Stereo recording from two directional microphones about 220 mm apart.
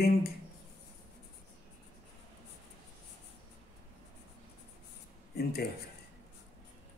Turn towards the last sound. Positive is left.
turn(degrees=45)  # may be behind; listen again after turning